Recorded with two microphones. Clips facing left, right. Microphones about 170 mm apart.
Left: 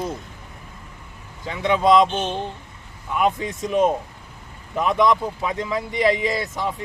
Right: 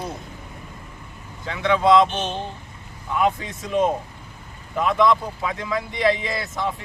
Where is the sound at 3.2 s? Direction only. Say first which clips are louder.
Left 1 dB; 20° left (ahead or behind).